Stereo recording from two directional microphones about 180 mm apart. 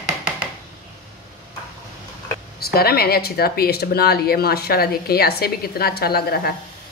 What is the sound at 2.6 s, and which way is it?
Speech, 60° left (ahead or behind).